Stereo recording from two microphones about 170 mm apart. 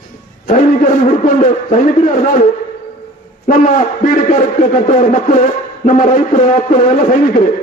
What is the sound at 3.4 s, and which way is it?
A man's voice, 45° left (ahead or behind).